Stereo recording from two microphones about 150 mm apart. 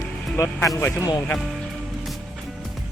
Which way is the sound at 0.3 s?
20° left (ahead or behind).